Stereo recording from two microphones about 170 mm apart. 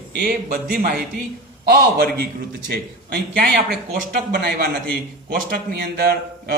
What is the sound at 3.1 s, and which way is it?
A man's voice, 65° right (ahead or behind).